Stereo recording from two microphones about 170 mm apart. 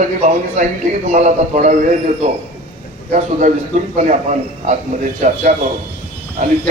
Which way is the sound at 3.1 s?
45° right (ahead or behind).